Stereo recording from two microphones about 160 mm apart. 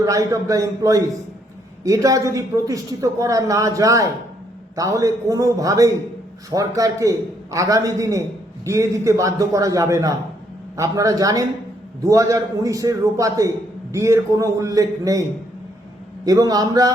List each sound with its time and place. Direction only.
0.0 s a man's voice: 20° right (ahead or behind)
16.2 s a man's voice: 25° right (ahead or behind)